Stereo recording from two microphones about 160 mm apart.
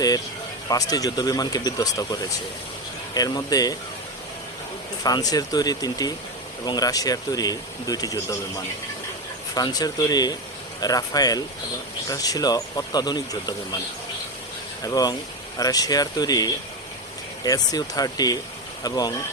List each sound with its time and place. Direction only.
0.7 s speech: 20° left (ahead or behind)
3.2 s speech: 25° left (ahead or behind)
5.0 s speech: 25° left (ahead or behind)
14.8 s speech: 25° left (ahead or behind)